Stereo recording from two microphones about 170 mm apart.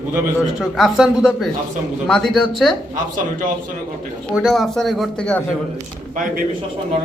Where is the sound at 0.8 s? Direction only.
Centre (ahead or behind).